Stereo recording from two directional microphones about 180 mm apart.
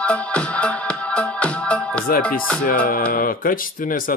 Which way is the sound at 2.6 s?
55° left (ahead or behind).